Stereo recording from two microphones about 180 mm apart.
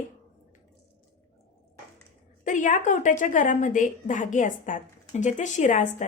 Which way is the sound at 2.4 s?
45° left (ahead or behind).